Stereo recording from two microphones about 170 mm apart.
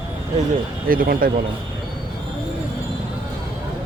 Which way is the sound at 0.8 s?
55° right (ahead or behind).